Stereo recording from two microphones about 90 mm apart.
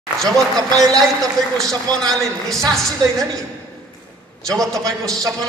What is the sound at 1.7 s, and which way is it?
A man's voice, 5° left (ahead or behind).